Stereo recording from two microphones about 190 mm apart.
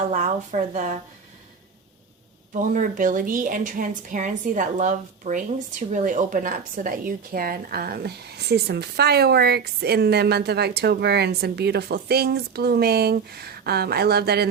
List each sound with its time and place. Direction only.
0.1 s speech: 40° right (ahead or behind)
2.5 s a woman's voice: 45° right (ahead or behind)